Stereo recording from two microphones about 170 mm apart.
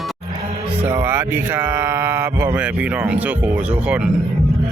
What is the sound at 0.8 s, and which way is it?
Speech, 15° right (ahead or behind).